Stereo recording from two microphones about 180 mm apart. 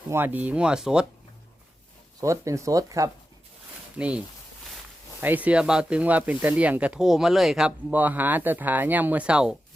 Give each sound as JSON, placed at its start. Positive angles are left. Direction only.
{"t": 0.1, "sound": "speech", "side_deg": -10}
{"t": 2.2, "sound": "speech", "side_deg": -15}
{"t": 3.9, "sound": "speech", "side_deg": -5}
{"t": 5.2, "sound": "speech", "side_deg": -10}